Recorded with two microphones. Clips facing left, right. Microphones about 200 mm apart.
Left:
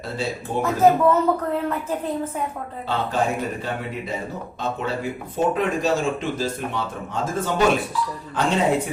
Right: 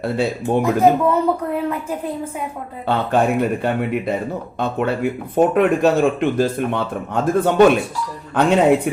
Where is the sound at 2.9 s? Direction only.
60° right (ahead or behind).